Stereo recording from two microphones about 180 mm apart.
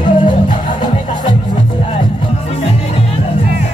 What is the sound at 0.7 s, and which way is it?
Music, 25° left (ahead or behind).